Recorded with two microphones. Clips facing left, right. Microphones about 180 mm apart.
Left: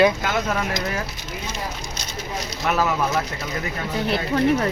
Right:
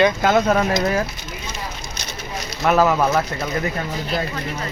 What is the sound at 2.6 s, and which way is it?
Speech, 55° right (ahead or behind).